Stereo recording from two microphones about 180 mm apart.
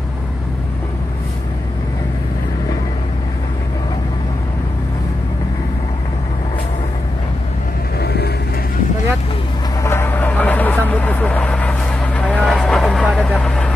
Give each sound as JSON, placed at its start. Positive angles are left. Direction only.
{"t": 8.0, "sound": "vehicle", "side_deg": 65}
{"t": 9.8, "sound": "vehicle", "side_deg": 10}